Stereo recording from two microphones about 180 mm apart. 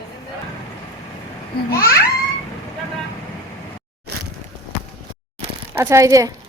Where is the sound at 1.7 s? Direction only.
15° left (ahead or behind).